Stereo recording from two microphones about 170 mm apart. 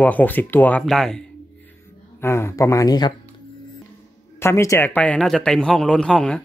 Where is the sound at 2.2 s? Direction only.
15° left (ahead or behind).